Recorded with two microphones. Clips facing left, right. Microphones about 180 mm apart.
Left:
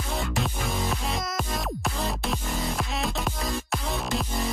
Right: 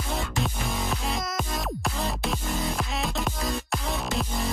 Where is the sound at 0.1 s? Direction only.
Centre (ahead or behind).